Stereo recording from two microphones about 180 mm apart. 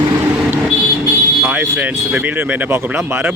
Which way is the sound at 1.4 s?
10° right (ahead or behind).